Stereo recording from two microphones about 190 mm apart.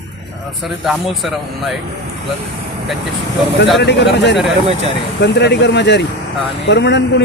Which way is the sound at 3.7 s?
65° left (ahead or behind).